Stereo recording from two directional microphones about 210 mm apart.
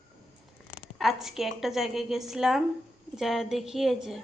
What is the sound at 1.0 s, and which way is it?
Speech, centre (ahead or behind).